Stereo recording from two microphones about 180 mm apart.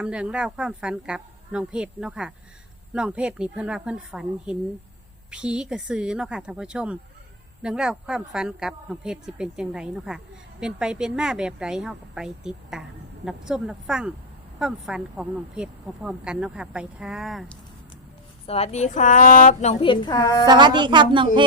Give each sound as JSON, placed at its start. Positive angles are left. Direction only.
{"t": 0.0, "sound": "speech", "side_deg": -5}
{"t": 18.4, "sound": "speech", "side_deg": 35}
{"t": 19.8, "sound": "a woman's voice", "side_deg": 25}
{"t": 20.4, "sound": "speech", "side_deg": -25}